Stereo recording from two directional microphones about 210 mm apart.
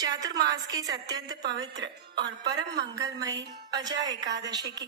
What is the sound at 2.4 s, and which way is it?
Music, 20° right (ahead or behind).